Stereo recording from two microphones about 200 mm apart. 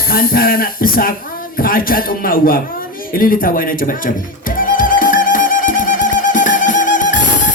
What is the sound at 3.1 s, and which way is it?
Music, 45° left (ahead or behind).